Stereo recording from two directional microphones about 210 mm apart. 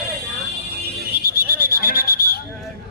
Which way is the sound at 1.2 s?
50° left (ahead or behind).